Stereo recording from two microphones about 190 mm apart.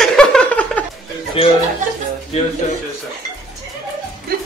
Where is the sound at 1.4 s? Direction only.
30° left (ahead or behind).